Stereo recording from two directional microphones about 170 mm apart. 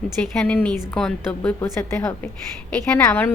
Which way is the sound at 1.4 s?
15° left (ahead or behind).